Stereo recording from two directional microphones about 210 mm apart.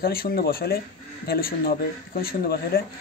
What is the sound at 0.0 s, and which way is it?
A man's voice, 45° left (ahead or behind).